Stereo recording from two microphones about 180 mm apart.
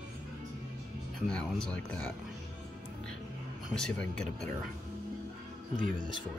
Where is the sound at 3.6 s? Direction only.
5° left (ahead or behind).